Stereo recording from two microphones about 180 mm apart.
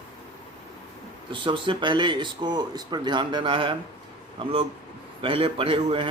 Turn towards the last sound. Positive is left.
turn(degrees=-30)  # may be behind; listen again after turning